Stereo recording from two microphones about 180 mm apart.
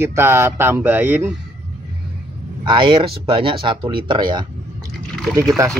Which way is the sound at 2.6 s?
30° right (ahead or behind).